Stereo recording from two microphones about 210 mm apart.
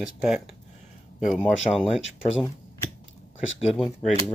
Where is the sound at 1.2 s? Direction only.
Centre (ahead or behind).